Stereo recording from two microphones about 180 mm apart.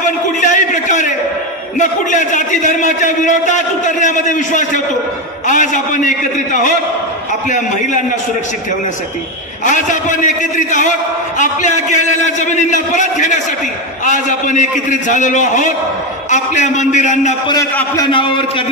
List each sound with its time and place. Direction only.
0.0 s a sound: 45° left (ahead or behind)
1.8 s a man's voice: 45° left (ahead or behind)
9.7 s a man's voice: 45° left (ahead or behind)
17.9 s a man's voice: 25° left (ahead or behind)